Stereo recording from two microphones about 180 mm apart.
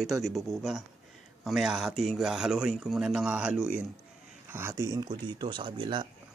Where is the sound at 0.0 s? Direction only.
Centre (ahead or behind); by 6.0 s 25° right (ahead or behind).